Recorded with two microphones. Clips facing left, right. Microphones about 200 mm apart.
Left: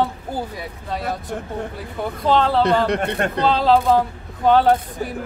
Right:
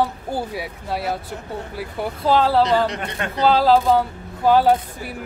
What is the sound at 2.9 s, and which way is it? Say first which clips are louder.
Speech: left 7 dB; 55° left (ahead or behind).